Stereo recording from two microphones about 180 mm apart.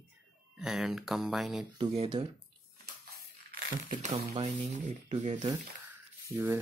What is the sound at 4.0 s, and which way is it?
Speech, 35° right (ahead or behind).